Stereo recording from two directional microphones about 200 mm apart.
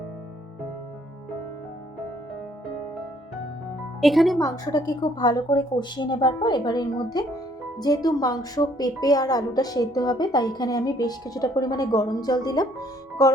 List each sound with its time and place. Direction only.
4.0 s speech: centre (ahead or behind)
4.4 s a woman's voice: 20° left (ahead or behind)